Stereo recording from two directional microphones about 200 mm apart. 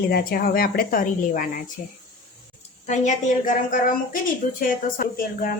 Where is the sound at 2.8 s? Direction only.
35° left (ahead or behind).